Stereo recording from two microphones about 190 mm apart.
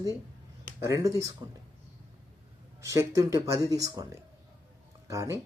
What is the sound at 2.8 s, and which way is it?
A man's voice, 15° right (ahead or behind).